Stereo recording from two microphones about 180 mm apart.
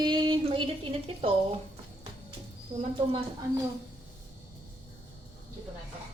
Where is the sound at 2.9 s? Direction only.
30° right (ahead or behind).